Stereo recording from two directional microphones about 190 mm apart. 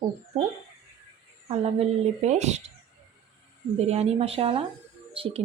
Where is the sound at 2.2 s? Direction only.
35° right (ahead or behind).